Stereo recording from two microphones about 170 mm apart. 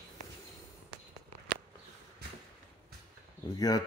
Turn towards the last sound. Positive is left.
turn(degrees=20)  # may be behind; listen again after turning